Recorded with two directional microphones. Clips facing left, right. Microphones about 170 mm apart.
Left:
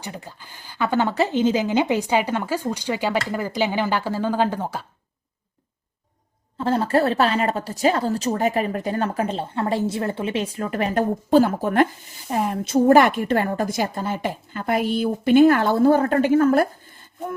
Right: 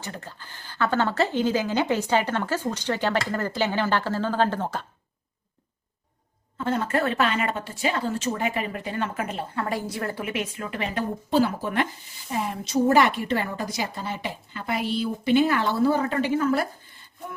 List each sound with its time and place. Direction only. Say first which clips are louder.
0.0 s speech: left 2 dB; 15° left (ahead or behind)
6.6 s a woman's voice: left 5 dB; 30° left (ahead or behind); by 16.6 s 50° left (ahead or behind)